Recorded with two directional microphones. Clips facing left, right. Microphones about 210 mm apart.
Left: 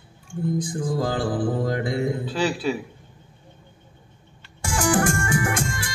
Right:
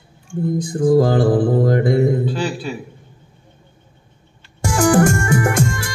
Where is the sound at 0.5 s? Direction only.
40° right (ahead or behind).